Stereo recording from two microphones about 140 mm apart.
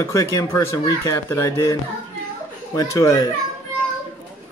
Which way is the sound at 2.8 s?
25° left (ahead or behind).